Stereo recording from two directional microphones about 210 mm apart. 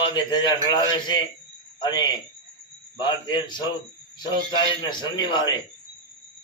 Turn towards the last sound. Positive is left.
turn(degrees=20)  # may be behind; listen again after turning